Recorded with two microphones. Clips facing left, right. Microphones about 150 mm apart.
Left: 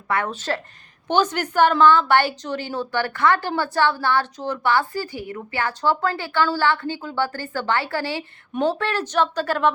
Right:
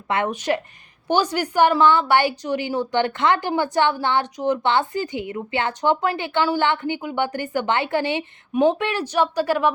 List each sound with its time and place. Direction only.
0.1 s a woman's voice: 20° right (ahead or behind)